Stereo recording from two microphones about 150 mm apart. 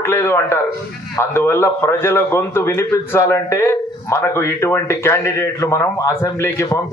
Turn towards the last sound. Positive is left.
turn(degrees=20)  # may be behind; listen again after turning